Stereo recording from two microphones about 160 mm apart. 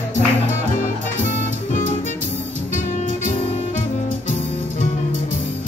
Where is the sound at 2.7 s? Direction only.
50° left (ahead or behind).